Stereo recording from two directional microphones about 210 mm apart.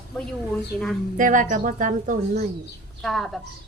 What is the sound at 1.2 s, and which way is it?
Speech, 40° right (ahead or behind).